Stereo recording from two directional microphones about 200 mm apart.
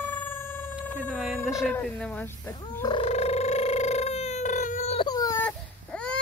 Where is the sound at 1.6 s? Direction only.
10° left (ahead or behind).